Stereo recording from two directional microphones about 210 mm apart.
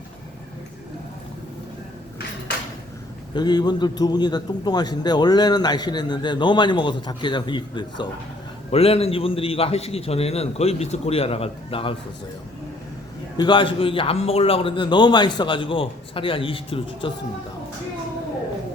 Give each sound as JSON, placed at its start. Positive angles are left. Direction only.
{"t": 3.3, "sound": "a man's voice", "side_deg": 20}
{"t": 13.3, "sound": "a man's voice", "side_deg": 20}